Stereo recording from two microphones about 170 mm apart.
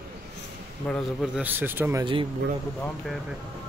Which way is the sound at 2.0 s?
30° right (ahead or behind).